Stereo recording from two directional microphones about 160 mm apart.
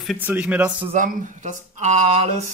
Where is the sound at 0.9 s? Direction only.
50° right (ahead or behind).